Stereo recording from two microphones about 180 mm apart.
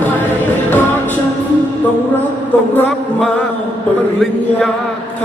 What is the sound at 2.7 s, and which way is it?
Music, 5° left (ahead or behind).